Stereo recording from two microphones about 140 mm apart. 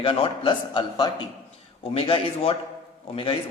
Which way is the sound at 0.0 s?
35° left (ahead or behind).